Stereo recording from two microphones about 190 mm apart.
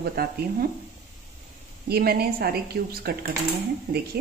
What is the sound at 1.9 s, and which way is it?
Speech, 55° right (ahead or behind).